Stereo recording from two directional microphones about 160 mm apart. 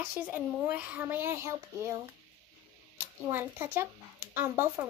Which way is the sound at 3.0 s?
15° right (ahead or behind).